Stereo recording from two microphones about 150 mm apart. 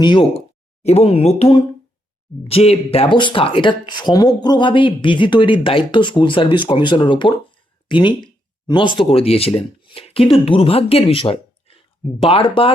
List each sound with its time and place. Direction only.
0.0 s speech: 35° left (ahead or behind)